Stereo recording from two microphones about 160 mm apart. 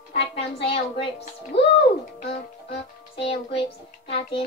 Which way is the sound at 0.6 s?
35° left (ahead or behind).